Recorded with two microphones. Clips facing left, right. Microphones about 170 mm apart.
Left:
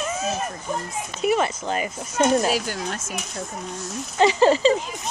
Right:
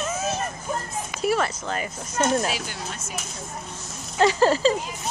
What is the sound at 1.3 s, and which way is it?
Speech, 20° left (ahead or behind).